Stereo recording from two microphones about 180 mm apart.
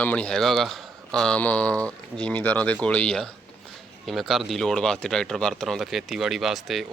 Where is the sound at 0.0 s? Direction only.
5° left (ahead or behind).